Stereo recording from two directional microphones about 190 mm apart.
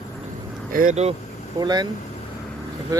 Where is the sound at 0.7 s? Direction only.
45° right (ahead or behind).